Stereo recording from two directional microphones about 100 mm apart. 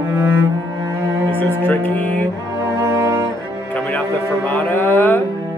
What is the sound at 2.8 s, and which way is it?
Cello, 30° right (ahead or behind).